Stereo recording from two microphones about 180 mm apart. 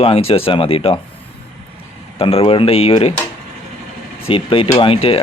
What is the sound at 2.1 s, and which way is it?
Speech, 30° left (ahead or behind).